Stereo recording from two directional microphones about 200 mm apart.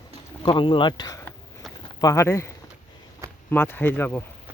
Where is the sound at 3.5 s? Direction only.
10° left (ahead or behind).